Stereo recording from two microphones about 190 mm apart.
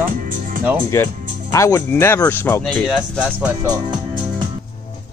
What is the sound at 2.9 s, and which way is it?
Speech, 5° right (ahead or behind).